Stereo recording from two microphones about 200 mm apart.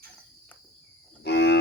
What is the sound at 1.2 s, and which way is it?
Cattle, 55° left (ahead or behind).